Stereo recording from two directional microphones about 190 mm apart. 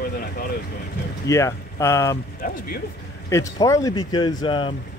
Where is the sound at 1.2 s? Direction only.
15° left (ahead or behind).